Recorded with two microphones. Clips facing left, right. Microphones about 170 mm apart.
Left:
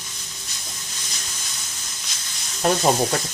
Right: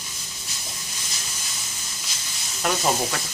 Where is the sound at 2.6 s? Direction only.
35° left (ahead or behind).